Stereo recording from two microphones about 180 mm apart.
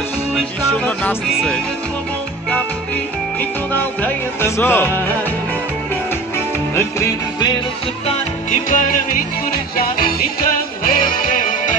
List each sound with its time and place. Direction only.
1.3 s speech: centre (ahead or behind)
3.7 s music: 10° left (ahead or behind)
6.7 s music: 15° left (ahead or behind)
8.5 s music: 45° left (ahead or behind)